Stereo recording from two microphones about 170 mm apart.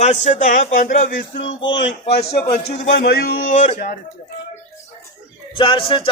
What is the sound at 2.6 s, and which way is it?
A man's voice, 70° left (ahead or behind).